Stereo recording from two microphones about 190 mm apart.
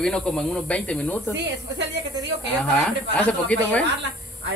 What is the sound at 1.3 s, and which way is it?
Speech, 65° right (ahead or behind).